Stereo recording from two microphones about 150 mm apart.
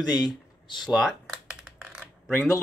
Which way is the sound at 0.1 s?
25° left (ahead or behind).